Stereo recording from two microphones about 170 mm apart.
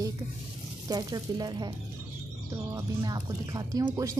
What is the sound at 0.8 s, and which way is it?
Speech, 25° right (ahead or behind).